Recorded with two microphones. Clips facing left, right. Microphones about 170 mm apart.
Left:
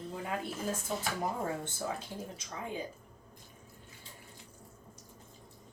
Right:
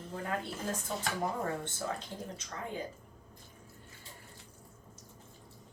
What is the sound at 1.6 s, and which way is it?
Speech, 10° left (ahead or behind).